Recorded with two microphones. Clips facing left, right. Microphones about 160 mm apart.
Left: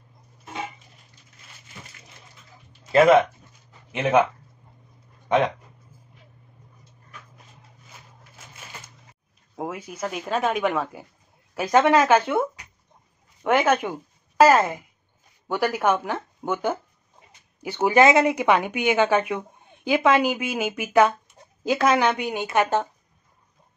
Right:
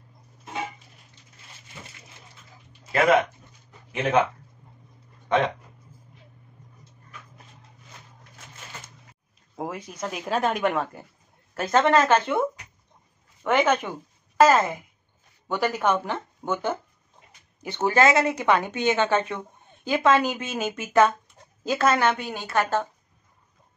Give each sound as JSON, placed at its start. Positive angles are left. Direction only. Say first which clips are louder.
{"t": 2.9, "sound": "speech", "louder": "left 5 dB", "side_deg": 25}
{"t": 9.6, "sound": "speech", "louder": "left 2 dB", "side_deg": 5}